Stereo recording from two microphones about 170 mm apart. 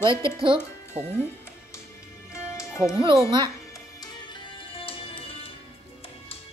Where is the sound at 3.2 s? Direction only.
25° right (ahead or behind).